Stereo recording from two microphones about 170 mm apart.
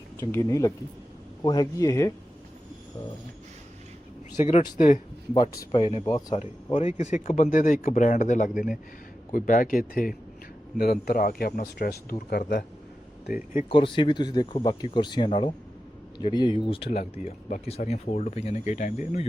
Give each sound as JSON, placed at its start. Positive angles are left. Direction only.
{"t": 0.2, "sound": "speech", "side_deg": 15}
{"t": 4.4, "sound": "speech", "side_deg": 40}
{"t": 5.7, "sound": "speech", "side_deg": 35}
{"t": 6.1, "sound": "speech", "side_deg": 20}
{"t": 6.3, "sound": "speech", "side_deg": 40}
{"t": 10.8, "sound": "speech", "side_deg": 65}
{"t": 13.2, "sound": "speech", "side_deg": -10}
{"t": 13.7, "sound": "speech", "side_deg": 30}